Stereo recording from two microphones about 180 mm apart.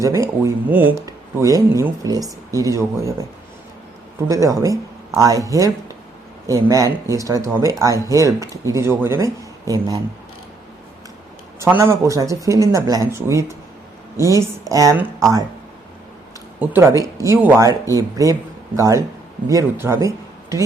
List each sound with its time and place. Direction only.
0.0 s speech: 15° right (ahead or behind)
4.3 s speech: 15° right (ahead or behind)
11.6 s speech: 15° right (ahead or behind)
17.0 s speech: 15° right (ahead or behind)